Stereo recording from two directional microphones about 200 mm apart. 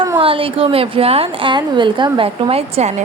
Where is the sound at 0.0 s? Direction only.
25° right (ahead or behind).